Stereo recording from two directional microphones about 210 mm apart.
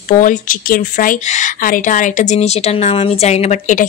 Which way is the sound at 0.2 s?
40° left (ahead or behind).